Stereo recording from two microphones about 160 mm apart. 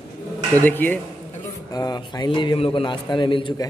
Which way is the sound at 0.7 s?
10° left (ahead or behind).